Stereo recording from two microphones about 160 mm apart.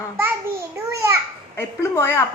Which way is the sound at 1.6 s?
15° left (ahead or behind).